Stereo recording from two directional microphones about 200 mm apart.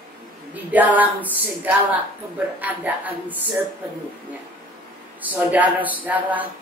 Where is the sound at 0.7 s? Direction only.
10° right (ahead or behind).